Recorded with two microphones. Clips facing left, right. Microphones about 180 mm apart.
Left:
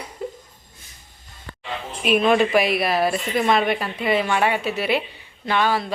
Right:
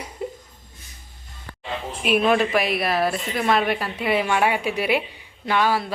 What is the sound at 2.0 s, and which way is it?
Speech, 5° right (ahead or behind).